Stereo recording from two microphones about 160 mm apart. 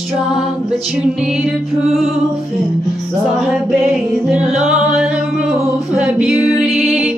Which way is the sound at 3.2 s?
Centre (ahead or behind).